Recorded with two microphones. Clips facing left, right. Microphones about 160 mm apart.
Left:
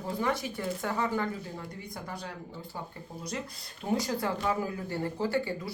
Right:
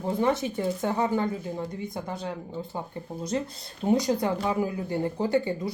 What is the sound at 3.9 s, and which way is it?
Speech, 20° right (ahead or behind).